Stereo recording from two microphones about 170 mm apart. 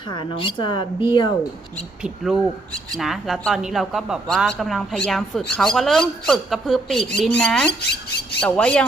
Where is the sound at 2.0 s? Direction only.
5° right (ahead or behind).